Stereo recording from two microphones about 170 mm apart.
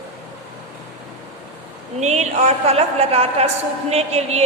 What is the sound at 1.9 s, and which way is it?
A woman's voice, 40° right (ahead or behind).